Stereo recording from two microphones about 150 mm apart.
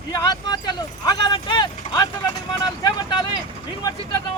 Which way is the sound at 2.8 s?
30° left (ahead or behind).